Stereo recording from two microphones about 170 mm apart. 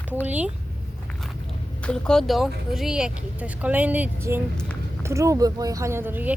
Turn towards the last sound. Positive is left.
turn(degrees=-10)  # may be behind; listen again after turning